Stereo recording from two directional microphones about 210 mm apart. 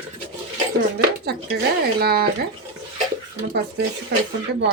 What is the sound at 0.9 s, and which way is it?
Speech, 50° right (ahead or behind).